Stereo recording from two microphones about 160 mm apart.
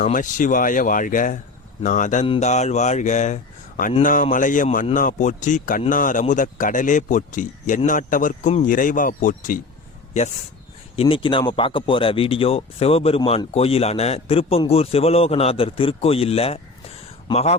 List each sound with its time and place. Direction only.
0.0 s a man's voice: 55° left (ahead or behind)
10.1 s a man's voice: 45° left (ahead or behind)